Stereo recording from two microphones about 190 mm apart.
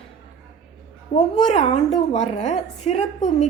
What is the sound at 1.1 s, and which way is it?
A woman's voice, 35° left (ahead or behind).